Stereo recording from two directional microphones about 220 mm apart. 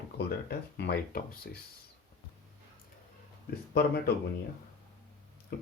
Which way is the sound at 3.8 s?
45° left (ahead or behind).